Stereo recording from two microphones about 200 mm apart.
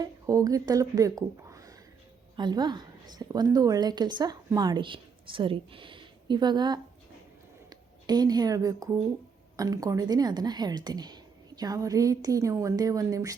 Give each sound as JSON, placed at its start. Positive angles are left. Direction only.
{"t": 0.0, "sound": "a woman's voice", "side_deg": -20}